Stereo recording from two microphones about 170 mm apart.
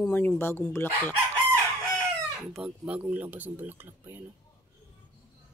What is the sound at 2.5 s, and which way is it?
Speech, 5° right (ahead or behind).